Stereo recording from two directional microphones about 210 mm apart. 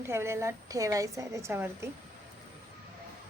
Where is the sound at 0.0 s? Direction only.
10° right (ahead or behind).